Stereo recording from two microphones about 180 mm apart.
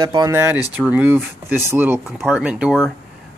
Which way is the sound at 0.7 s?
10° right (ahead or behind).